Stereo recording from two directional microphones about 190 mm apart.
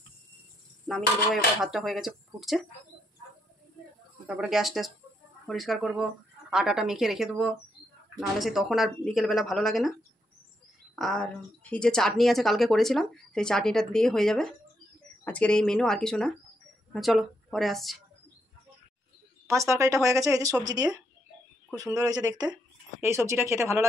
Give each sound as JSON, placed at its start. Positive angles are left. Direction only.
{"t": 0.8, "sound": "speech", "side_deg": 0}
{"t": 4.3, "sound": "speech", "side_deg": 0}
{"t": 11.0, "sound": "speech", "side_deg": 5}
{"t": 19.5, "sound": "speech", "side_deg": -15}